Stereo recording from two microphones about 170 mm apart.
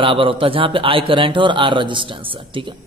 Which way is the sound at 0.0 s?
30° right (ahead or behind).